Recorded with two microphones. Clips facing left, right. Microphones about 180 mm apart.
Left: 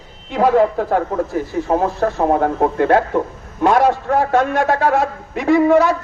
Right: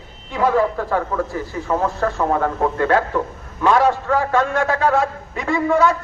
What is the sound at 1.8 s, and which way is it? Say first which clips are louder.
A man's voice: left 3 dB; 35° left (ahead or behind).